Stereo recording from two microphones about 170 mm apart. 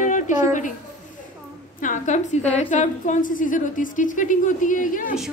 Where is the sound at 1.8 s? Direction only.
45° left (ahead or behind).